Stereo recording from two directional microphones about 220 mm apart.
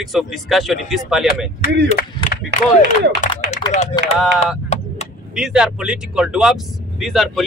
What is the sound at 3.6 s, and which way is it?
Speech, 20° left (ahead or behind).